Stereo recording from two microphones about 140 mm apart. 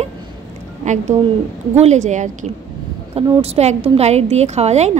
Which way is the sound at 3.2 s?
45° right (ahead or behind).